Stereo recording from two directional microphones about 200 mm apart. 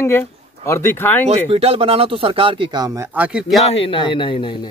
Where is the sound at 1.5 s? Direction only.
30° right (ahead or behind).